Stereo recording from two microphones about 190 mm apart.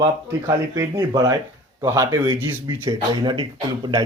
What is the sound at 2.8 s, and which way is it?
Speech, 20° right (ahead or behind).